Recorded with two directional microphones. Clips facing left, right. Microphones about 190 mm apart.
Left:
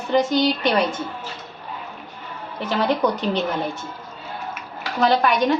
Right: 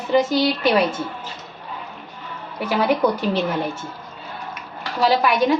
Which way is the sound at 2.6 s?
10° right (ahead or behind).